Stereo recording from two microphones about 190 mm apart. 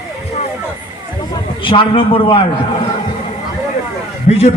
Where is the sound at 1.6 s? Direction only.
25° left (ahead or behind).